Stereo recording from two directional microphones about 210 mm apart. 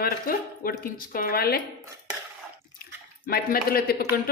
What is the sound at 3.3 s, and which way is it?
Speech, 45° left (ahead or behind).